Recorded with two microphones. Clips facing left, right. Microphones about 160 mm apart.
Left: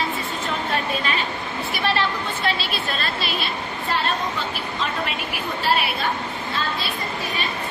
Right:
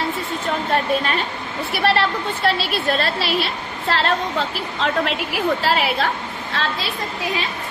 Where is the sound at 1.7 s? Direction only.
70° right (ahead or behind); by 6.9 s 90° right.